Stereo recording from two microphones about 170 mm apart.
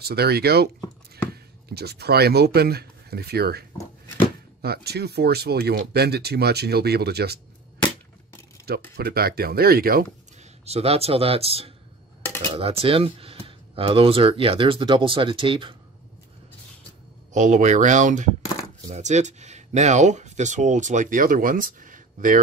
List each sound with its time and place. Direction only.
0.0 s speech: 70° right (ahead or behind)
8.6 s speech: 65° right (ahead or behind)
10.6 s speech: 35° right (ahead or behind)
17.3 s speech: 45° right (ahead or behind)